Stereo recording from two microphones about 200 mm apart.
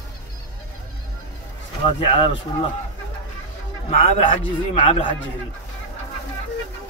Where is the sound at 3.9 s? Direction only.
35° left (ahead or behind).